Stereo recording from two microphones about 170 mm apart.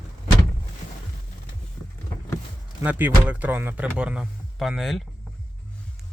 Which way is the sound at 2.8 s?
10° right (ahead or behind).